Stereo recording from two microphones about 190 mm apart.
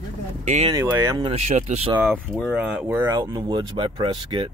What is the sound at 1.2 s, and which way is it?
Speech, 35° right (ahead or behind).